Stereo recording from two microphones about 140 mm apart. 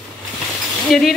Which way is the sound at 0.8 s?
Centre (ahead or behind).